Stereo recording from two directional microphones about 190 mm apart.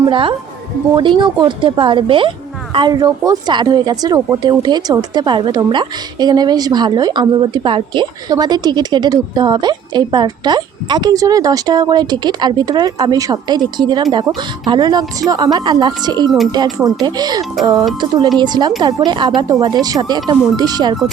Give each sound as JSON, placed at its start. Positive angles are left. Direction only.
{"t": 0.0, "sound": "a woman's voice", "side_deg": -25}